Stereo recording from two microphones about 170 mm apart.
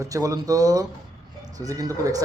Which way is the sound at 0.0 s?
20° right (ahead or behind).